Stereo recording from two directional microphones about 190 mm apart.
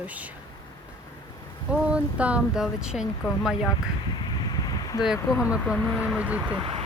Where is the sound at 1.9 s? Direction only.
5° right (ahead or behind).